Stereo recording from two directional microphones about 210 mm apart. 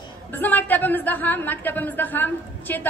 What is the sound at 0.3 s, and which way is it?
A woman's voice, 10° left (ahead or behind).